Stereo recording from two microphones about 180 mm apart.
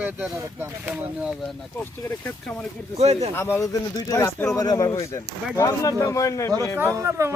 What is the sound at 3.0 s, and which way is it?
Speech, 35° right (ahead or behind).